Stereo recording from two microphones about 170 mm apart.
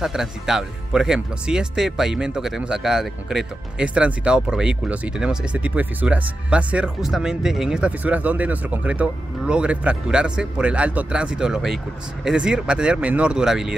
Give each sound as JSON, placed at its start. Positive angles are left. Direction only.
{"t": 0.0, "sound": "speech", "side_deg": -5}